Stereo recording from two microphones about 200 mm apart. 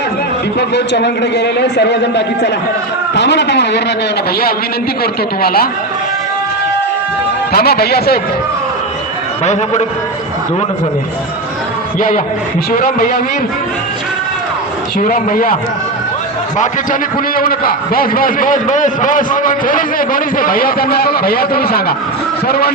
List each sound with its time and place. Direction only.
0.7 s a man's voice: 60° left (ahead or behind)
5.4 s a man's voice: 50° left (ahead or behind)
7.5 s a man's voice: 50° left (ahead or behind)
9.4 s a man's voice: 35° left (ahead or behind)
11.9 s a man's voice: 45° left (ahead or behind)
14.9 s a man's voice: 45° left (ahead or behind)
16.6 s a man's voice: 45° left (ahead or behind)